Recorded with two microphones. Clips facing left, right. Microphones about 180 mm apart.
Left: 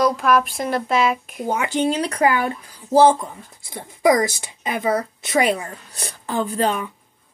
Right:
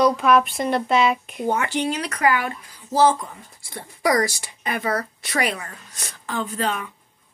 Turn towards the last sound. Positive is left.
turn(degrees=35)  # may be behind; listen again after turning